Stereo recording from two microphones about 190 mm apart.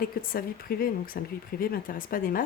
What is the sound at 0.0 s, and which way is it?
Speech, 50° left (ahead or behind).